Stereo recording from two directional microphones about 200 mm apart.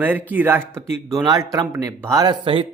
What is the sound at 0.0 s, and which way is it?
A man's voice, 10° right (ahead or behind).